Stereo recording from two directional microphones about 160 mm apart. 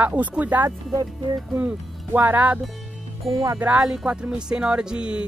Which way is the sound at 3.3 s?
20° right (ahead or behind).